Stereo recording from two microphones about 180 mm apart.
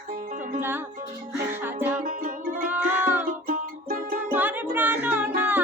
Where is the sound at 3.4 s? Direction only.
55° right (ahead or behind).